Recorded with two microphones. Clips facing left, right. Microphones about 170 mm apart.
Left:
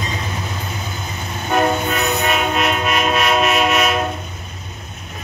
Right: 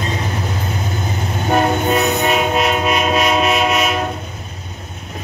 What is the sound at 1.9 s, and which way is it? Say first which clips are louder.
Train: right 4 dB; 25° right (ahead or behind).